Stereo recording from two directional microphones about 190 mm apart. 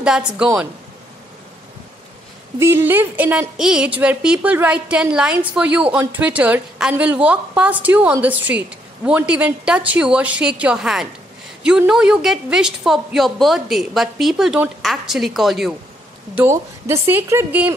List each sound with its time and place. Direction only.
0.0 s a woman's voice: 5° right (ahead or behind)
2.6 s a woman's voice: 10° right (ahead or behind)
16.3 s a woman's voice: 15° right (ahead or behind)